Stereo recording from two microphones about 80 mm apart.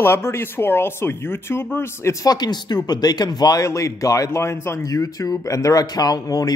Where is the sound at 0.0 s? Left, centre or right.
Left.